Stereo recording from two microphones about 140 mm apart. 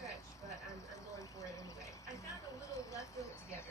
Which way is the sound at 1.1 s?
20° left (ahead or behind).